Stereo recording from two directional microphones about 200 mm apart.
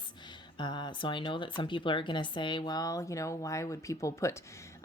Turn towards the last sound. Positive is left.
turn(degrees=15)  # may be behind; listen again after turning